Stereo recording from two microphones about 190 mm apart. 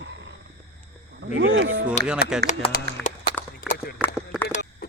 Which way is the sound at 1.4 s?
70° right (ahead or behind).